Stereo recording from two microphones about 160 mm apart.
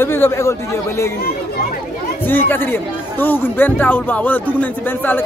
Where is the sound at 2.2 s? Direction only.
10° left (ahead or behind).